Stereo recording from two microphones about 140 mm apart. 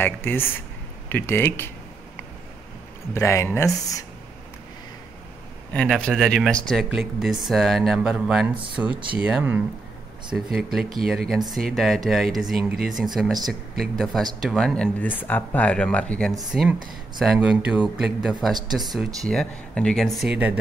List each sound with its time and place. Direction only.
0.0 s speech: 15° left (ahead or behind)
3.2 s speech: 20° left (ahead or behind)
5.7 s speech: 5° left (ahead or behind); by 9.6 s 15° right (ahead or behind)
10.3 s speech: centre (ahead or behind)